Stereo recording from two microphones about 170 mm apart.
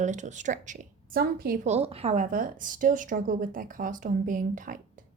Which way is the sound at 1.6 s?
40° right (ahead or behind).